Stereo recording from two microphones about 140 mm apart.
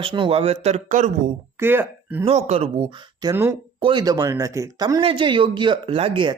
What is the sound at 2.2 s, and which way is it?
Speech, 50° right (ahead or behind).